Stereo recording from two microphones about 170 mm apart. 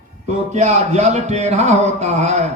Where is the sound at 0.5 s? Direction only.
40° right (ahead or behind).